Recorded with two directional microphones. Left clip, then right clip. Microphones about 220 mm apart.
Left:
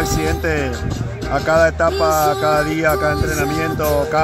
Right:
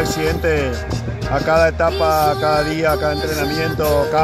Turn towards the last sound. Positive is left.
turn(degrees=10)  # may be behind; listen again after turning